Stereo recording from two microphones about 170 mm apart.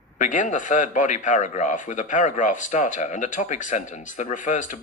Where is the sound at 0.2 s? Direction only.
50° left (ahead or behind).